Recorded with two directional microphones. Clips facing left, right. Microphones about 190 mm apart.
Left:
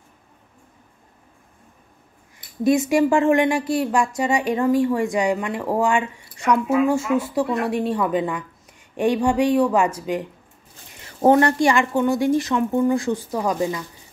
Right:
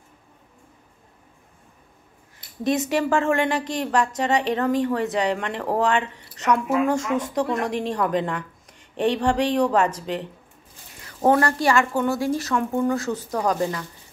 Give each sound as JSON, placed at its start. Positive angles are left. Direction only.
{"t": 2.6, "sound": "speech", "side_deg": 10}
{"t": 11.1, "sound": "a woman's voice", "side_deg": 25}